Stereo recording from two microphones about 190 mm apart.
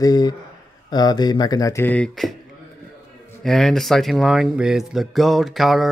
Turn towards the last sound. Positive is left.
turn(degrees=0)  # may be behind; listen again after turning